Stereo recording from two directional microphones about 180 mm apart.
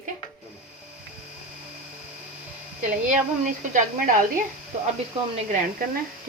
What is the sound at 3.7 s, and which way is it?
Speech, 45° right (ahead or behind).